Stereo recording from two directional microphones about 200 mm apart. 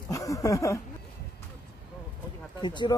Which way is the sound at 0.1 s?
15° left (ahead or behind).